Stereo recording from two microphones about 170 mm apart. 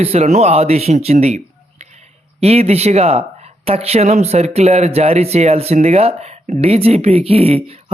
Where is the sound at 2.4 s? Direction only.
35° right (ahead or behind).